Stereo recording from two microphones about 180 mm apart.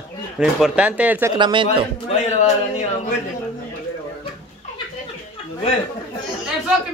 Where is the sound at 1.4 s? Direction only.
25° right (ahead or behind).